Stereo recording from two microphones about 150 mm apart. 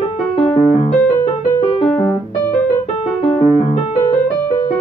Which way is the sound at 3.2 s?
45° left (ahead or behind).